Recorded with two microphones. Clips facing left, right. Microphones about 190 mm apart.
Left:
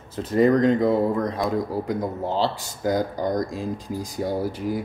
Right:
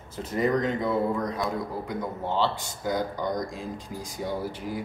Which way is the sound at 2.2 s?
40° left (ahead or behind).